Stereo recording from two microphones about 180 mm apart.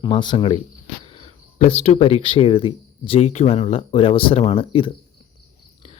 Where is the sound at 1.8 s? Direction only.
35° left (ahead or behind).